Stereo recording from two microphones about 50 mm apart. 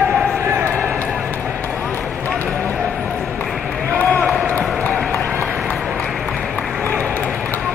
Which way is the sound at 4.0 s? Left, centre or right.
Left.